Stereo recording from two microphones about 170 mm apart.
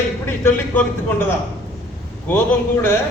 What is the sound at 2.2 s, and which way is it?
Speech, 15° left (ahead or behind).